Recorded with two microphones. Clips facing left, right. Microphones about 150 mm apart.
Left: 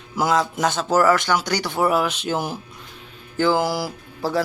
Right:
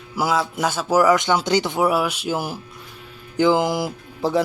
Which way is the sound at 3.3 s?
20° right (ahead or behind).